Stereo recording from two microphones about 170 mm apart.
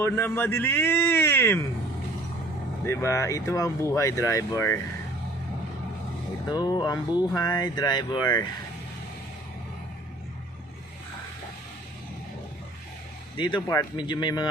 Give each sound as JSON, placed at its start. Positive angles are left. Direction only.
{"t": 0.0, "sound": "speech", "side_deg": 10}
{"t": 2.8, "sound": "speech", "side_deg": 15}
{"t": 6.5, "sound": "speech", "side_deg": 25}
{"t": 13.3, "sound": "speech", "side_deg": 25}